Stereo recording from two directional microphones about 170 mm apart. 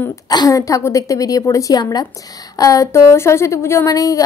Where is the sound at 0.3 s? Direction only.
20° left (ahead or behind).